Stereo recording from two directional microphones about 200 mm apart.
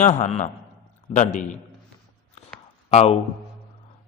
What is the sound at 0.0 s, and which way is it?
A man's voice, 35° left (ahead or behind).